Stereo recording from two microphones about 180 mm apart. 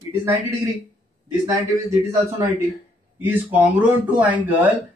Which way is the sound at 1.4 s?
15° right (ahead or behind).